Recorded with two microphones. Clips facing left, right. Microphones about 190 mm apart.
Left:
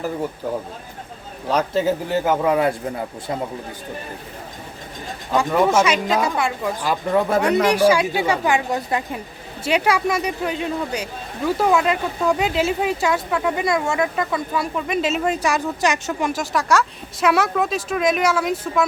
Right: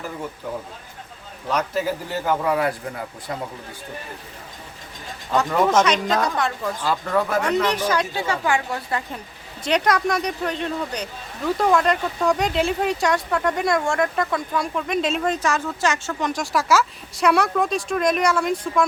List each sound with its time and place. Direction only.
1.5 s a man's voice: 30° left (ahead or behind)
5.3 s speech: 10° left (ahead or behind); by 7.5 s 30° left (ahead or behind)
7.7 s speech: 10° left (ahead or behind)